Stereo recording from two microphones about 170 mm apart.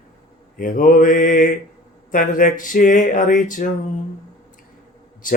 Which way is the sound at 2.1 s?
50° left (ahead or behind).